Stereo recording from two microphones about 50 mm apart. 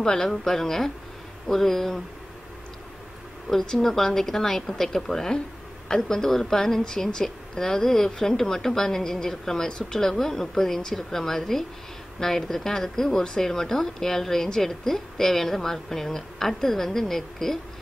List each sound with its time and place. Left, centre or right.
0.0 s a woman's voice: centre
3.4 s a woman's voice: centre